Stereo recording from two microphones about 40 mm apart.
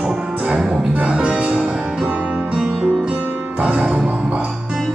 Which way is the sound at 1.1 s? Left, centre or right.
Right.